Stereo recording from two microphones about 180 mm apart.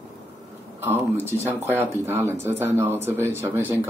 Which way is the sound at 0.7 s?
10° right (ahead or behind).